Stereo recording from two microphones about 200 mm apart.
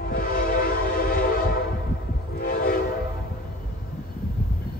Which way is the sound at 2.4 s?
45° left (ahead or behind).